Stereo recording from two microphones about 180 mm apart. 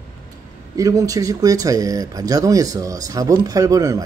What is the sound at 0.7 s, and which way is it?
Speech, 20° right (ahead or behind).